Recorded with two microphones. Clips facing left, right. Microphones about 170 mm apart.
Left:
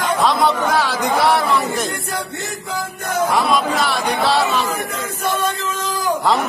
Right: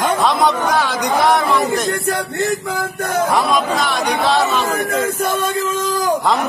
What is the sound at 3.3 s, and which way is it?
A man's voice, centre (ahead or behind).